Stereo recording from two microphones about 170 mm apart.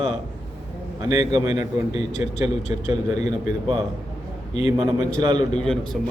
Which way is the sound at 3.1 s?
45° left (ahead or behind).